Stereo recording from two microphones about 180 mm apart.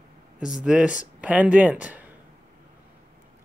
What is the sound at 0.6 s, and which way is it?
Speech, 5° right (ahead or behind).